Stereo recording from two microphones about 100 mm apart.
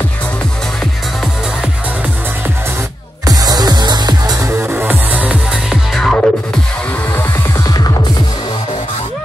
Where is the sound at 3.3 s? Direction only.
40° right (ahead or behind).